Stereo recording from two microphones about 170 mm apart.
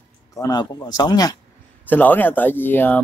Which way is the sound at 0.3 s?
20° left (ahead or behind).